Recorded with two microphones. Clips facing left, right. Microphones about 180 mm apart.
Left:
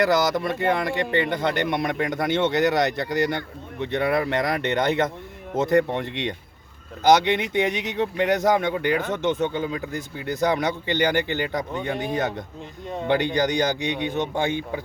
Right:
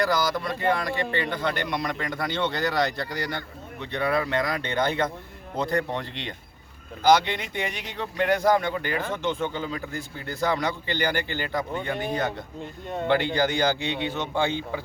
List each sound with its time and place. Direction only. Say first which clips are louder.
0.0 s a man's voice: left 4 dB; 20° left (ahead or behind)